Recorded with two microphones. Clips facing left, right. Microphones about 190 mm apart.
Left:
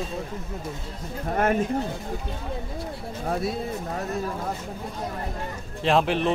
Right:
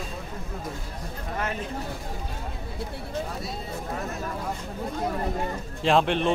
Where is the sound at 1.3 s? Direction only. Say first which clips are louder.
Left 9 dB; 50° left (ahead or behind).